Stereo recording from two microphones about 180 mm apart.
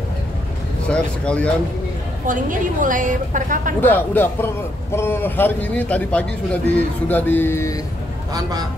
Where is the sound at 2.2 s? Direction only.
45° right (ahead or behind).